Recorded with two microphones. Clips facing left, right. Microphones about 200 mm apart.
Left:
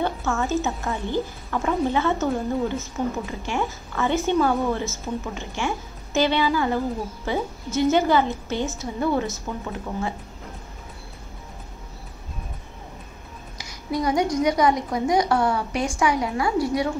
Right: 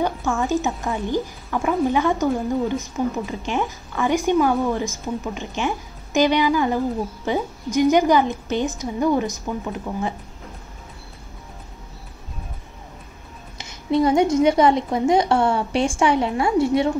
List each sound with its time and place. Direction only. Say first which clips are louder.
0.0 s a woman's voice: right 2 dB; 15° right (ahead or behind)
13.6 s a woman's voice: right 7 dB; 25° right (ahead or behind)